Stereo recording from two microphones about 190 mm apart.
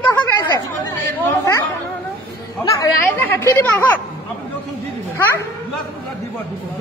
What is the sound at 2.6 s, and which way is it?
A woman's voice, 15° left (ahead or behind).